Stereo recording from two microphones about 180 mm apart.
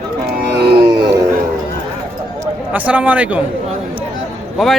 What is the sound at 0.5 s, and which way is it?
Music, 65° right (ahead or behind).